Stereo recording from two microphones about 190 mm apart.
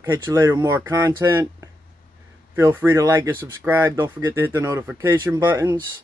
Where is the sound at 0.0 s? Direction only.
10° right (ahead or behind).